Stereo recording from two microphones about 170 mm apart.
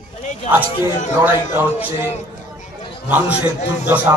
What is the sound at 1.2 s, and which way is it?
A man's voice, 15° right (ahead or behind).